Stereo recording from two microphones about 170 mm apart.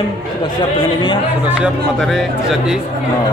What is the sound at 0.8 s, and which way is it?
Speech, 30° left (ahead or behind).